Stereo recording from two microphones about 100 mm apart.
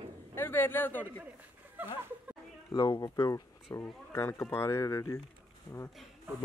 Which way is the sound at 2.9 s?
35° left (ahead or behind).